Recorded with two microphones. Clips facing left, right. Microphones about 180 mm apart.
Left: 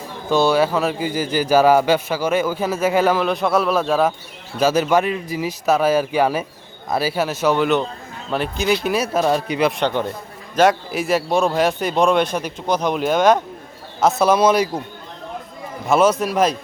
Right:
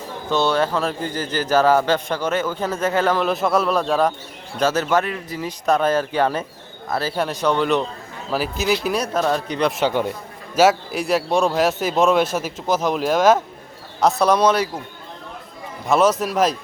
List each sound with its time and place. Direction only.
0.3 s a man's voice: 10° left (ahead or behind)
3.2 s a man's voice: centre (ahead or behind)
15.9 s speech: centre (ahead or behind)